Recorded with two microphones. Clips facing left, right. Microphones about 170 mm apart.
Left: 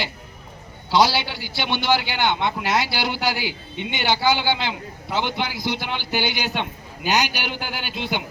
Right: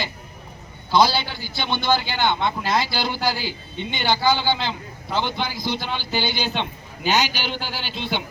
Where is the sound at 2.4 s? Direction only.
5° left (ahead or behind).